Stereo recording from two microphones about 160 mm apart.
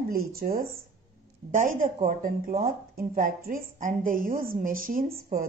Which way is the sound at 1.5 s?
55° right (ahead or behind).